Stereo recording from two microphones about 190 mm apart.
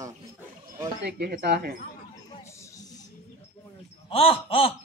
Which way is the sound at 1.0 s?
60° right (ahead or behind).